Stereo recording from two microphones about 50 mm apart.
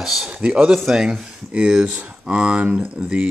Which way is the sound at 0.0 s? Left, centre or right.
Centre.